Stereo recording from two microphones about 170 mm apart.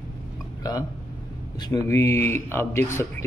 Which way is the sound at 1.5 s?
20° left (ahead or behind).